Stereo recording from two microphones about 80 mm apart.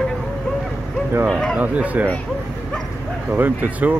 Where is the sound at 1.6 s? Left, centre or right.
Centre.